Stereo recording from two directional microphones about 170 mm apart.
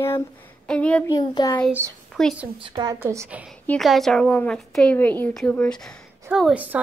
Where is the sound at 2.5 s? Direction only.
30° right (ahead or behind).